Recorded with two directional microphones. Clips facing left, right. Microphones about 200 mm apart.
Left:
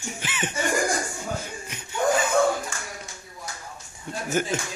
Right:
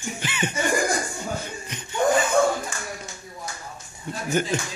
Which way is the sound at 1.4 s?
5° left (ahead or behind).